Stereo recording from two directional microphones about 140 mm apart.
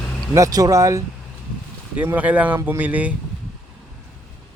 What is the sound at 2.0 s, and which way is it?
Speech, 10° right (ahead or behind).